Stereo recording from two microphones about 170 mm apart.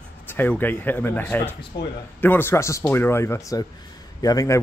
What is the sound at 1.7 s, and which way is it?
Speech, 85° left.